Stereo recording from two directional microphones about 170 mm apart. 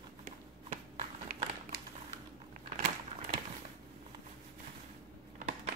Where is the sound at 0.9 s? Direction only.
60° right (ahead or behind).